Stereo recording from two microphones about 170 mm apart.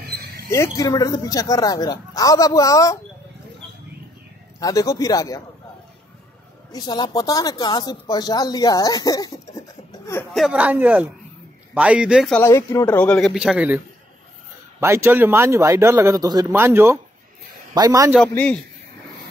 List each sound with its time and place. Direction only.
0.5 s speech: 20° left (ahead or behind)
4.6 s speech: 20° left (ahead or behind)
6.7 s speech: 25° left (ahead or behind)
10.3 s a man's voice: 5° right (ahead or behind)
12.3 s speech: 15° left (ahead or behind)
13.3 s a man's voice: 5° right (ahead or behind)
14.8 s a man's voice: 15° right (ahead or behind)
18.3 s speech: 10° left (ahead or behind)